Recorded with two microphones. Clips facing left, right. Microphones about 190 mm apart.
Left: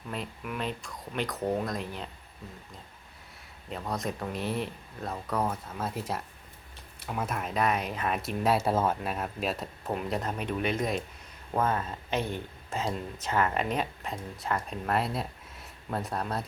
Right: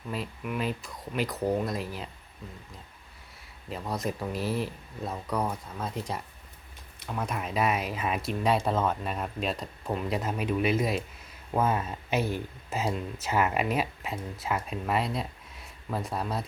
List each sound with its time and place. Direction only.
0.1 s speech: centre (ahead or behind)
3.7 s speech: centre (ahead or behind)